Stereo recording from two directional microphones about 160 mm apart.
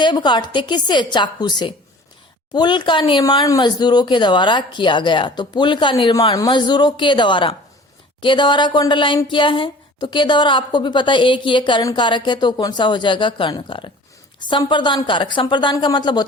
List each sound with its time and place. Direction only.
0.0 s speech: 30° left (ahead or behind)